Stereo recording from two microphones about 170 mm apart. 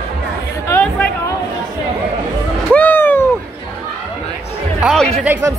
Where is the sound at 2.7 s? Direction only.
10° left (ahead or behind).